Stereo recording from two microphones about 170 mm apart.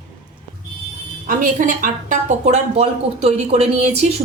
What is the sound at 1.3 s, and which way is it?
A woman's voice, 55° right (ahead or behind).